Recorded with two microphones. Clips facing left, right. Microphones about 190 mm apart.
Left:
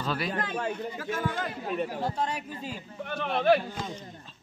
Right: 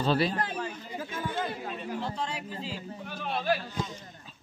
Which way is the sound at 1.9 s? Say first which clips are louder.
Left 3 dB; 40° left (ahead or behind).